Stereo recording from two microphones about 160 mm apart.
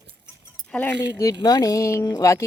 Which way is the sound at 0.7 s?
5° left (ahead or behind).